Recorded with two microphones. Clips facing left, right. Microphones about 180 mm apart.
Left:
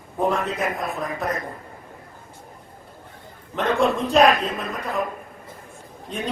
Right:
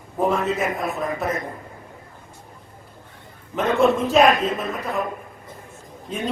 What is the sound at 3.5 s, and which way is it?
A man's voice, centre (ahead or behind).